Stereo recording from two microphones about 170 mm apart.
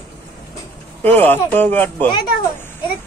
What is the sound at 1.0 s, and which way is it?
Speech, 10° left (ahead or behind).